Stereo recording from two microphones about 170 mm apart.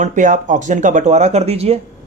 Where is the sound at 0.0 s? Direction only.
50° right (ahead or behind).